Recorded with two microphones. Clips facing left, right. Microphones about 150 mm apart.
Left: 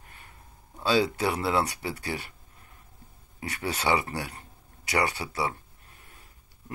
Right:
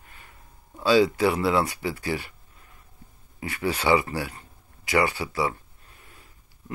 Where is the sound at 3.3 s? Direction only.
40° left (ahead or behind).